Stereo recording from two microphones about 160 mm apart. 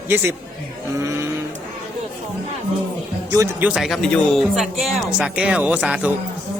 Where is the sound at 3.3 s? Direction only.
20° right (ahead or behind).